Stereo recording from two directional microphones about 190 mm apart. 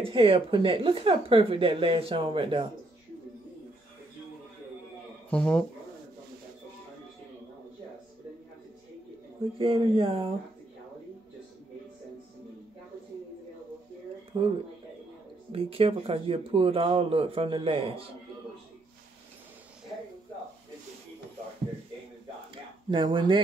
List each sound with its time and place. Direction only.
0.0 s speech: 30° right (ahead or behind)
5.3 s speech: 5° left (ahead or behind)
9.6 s speech: 30° right (ahead or behind)
14.3 s speech: 30° right (ahead or behind)
15.5 s speech: 30° right (ahead or behind)
22.8 s speech: 25° right (ahead or behind)